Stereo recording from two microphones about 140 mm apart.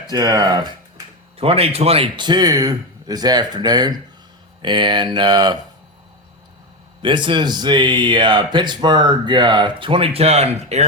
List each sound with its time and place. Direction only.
0.1 s speech: 30° right (ahead or behind)
1.4 s speech: 45° right (ahead or behind); by 5.6 s 30° right (ahead or behind)
7.0 s speech: 35° right (ahead or behind); by 10.8 s 50° right (ahead or behind)